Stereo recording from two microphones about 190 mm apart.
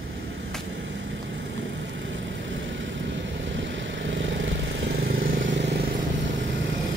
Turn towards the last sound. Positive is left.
turn(degrees=-70)  # may be behind; listen again after turning